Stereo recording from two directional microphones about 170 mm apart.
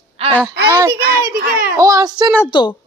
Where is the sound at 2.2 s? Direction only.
Centre (ahead or behind).